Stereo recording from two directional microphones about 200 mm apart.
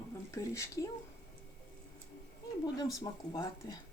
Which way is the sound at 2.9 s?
20° left (ahead or behind).